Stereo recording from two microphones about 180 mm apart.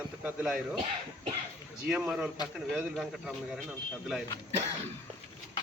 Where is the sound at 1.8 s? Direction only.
5° right (ahead or behind).